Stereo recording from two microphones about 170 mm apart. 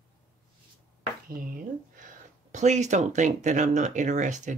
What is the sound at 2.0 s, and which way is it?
Speech, 45° right (ahead or behind).